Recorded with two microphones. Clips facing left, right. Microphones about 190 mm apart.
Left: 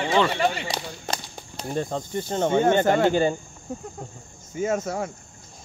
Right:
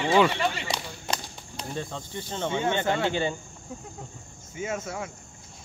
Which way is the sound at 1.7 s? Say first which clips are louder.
Left 8 dB; 45° left (ahead or behind).